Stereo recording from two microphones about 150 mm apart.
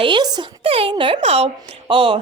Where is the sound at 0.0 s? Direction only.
30° right (ahead or behind).